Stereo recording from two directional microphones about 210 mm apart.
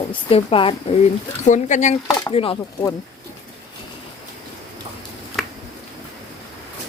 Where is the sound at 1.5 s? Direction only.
35° left (ahead or behind).